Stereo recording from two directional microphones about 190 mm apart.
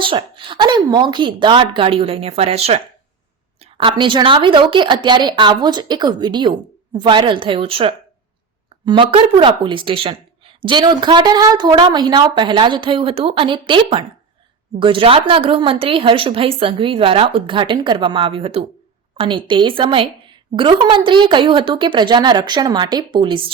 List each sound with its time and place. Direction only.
0.0 s a woman's voice: 25° right (ahead or behind)